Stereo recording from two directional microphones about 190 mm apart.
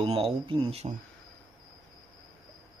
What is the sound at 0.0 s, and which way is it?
Speech, 30° right (ahead or behind).